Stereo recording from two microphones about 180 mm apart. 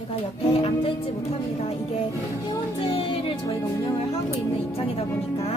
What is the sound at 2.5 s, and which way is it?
Speech, 30° left (ahead or behind).